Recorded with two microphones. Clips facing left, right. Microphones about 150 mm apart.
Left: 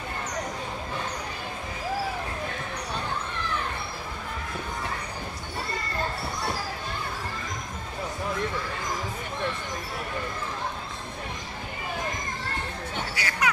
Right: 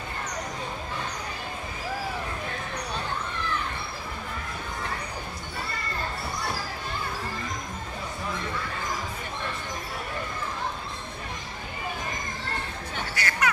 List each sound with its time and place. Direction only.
13.1 s music: 10° left (ahead or behind)